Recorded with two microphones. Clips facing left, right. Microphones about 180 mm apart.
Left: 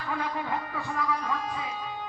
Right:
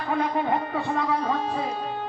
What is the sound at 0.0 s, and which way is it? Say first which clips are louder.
A man's voice: right 7 dB; 25° right (ahead or behind).